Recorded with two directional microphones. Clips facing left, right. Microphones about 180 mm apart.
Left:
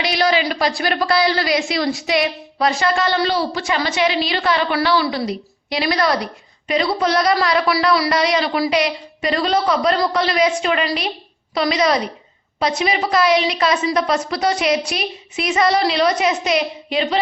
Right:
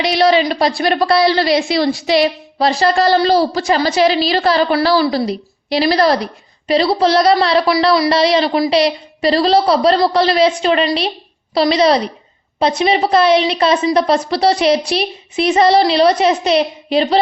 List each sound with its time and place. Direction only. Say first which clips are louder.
0.0 s a woman's voice: right 5 dB; 30° right (ahead or behind)